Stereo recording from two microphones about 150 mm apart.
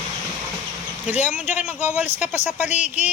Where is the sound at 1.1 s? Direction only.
50° left (ahead or behind).